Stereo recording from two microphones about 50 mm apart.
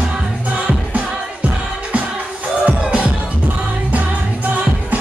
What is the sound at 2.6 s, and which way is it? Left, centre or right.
Music, right.